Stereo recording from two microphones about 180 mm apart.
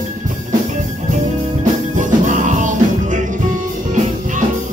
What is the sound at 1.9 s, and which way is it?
Music, 45° right (ahead or behind).